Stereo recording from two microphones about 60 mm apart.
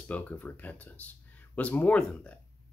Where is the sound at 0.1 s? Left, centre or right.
Left.